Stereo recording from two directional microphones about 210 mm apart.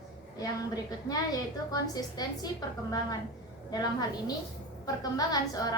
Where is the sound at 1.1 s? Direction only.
20° left (ahead or behind).